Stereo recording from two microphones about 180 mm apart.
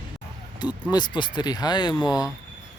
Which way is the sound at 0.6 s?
25° left (ahead or behind).